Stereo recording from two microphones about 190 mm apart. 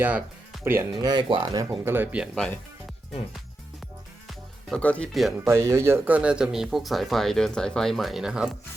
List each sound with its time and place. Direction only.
0.6 s speech: 10° right (ahead or behind)
1.0 s speech: 25° right (ahead or behind)
1.8 s speech: 10° right (ahead or behind)
4.7 s speech: 5° left (ahead or behind)
5.5 s speech: 15° right (ahead or behind)